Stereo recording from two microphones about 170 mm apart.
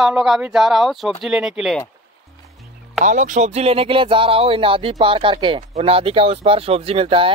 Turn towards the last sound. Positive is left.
turn(degrees=-35)  # may be behind; listen again after turning